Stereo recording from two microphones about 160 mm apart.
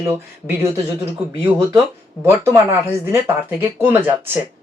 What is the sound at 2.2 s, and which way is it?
Speech, 15° right (ahead or behind).